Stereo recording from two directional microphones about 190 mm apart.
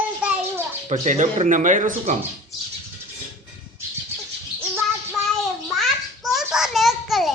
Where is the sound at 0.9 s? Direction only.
40° right (ahead or behind).